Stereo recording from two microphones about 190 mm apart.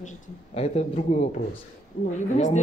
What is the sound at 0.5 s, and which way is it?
A woman's voice, 35° left (ahead or behind).